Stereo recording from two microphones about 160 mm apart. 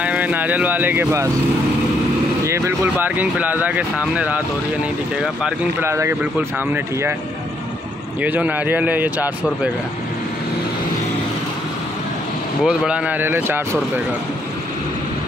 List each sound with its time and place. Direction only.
0.0 s speech: 10° right (ahead or behind)
2.4 s speech: 15° right (ahead or behind)
5.8 s speech: 15° right (ahead or behind)
8.2 s speech: 10° right (ahead or behind)
12.6 s speech: 5° right (ahead or behind)